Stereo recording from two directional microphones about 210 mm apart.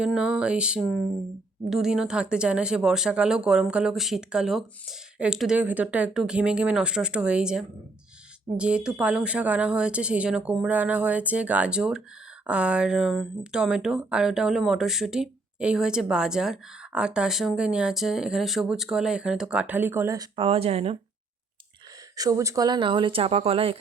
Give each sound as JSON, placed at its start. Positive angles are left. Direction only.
{"t": 0.0, "sound": "speech", "side_deg": -5}
{"t": 22.1, "sound": "speech", "side_deg": -15}